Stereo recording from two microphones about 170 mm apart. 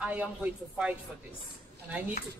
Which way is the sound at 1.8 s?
10° right (ahead or behind).